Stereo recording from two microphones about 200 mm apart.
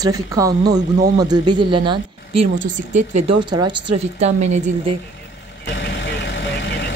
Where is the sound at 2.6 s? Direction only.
35° right (ahead or behind).